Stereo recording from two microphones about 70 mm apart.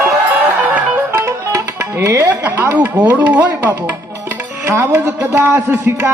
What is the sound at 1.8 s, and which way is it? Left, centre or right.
Tabla, right.